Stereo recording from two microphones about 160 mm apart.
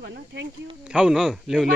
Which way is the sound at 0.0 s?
90° right.